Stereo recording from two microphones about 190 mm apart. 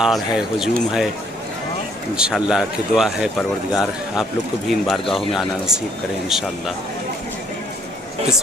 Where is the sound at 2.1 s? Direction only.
5° right (ahead or behind).